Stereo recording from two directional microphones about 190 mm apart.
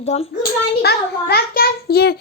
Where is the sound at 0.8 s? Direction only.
55° left (ahead or behind).